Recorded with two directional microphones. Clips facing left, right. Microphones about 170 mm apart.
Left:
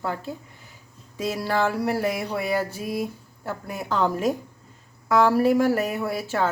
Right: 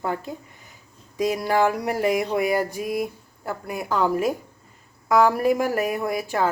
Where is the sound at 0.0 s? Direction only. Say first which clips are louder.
Right 2 dB; 15° right (ahead or behind).